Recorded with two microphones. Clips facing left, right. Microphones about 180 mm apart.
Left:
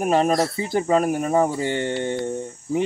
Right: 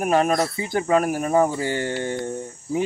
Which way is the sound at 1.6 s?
25° left (ahead or behind).